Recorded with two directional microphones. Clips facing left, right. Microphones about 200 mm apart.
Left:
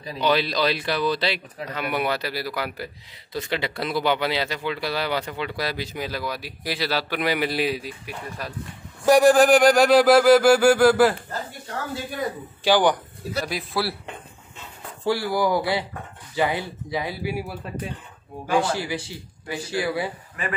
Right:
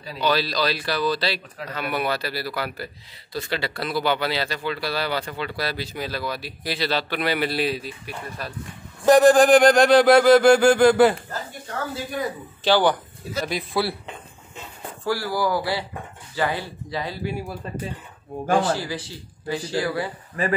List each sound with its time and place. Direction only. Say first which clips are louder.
0.0 s speech: left 1 dB; 20° left (ahead or behind); by 11.1 s centre (ahead or behind)
12.6 s speech: even; 15° left (ahead or behind)
13.4 s speech: right 2 dB; centre (ahead or behind)
15.0 s speech: left 2 dB; 20° left (ahead or behind)
18.6 s speech: right 1 dB; 15° left (ahead or behind)
20.4 s speech: right 6 dB; 35° right (ahead or behind)